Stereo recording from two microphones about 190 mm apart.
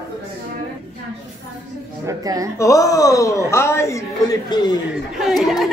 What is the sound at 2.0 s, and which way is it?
Speech, 20° right (ahead or behind).